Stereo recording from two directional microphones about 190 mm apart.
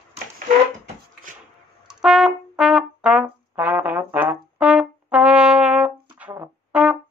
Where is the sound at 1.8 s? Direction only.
5° right (ahead or behind).